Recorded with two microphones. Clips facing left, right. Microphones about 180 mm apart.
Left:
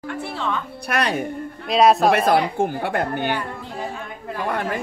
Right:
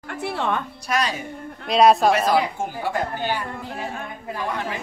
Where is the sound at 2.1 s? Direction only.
60° left (ahead or behind).